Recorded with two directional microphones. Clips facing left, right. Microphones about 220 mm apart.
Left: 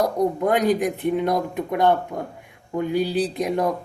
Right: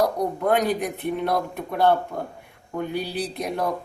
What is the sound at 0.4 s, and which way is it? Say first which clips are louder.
Speech: left 1 dB; 15° left (ahead or behind).